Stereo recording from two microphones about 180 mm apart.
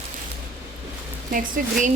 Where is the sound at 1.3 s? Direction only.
50° right (ahead or behind).